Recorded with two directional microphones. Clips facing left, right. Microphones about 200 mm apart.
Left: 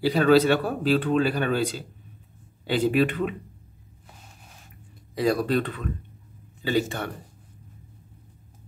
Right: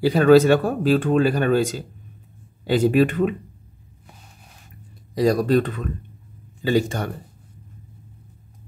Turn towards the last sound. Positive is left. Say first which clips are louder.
# right 4 dB
turn(degrees=-45)  # may be behind; listen again after turning